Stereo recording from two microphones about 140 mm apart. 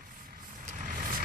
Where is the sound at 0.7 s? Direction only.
80° right.